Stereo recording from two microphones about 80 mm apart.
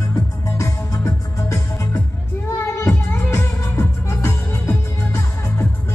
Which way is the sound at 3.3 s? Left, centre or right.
Left.